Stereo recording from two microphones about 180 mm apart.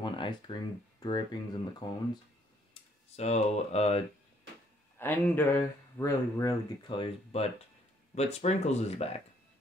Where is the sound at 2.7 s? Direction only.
35° left (ahead or behind).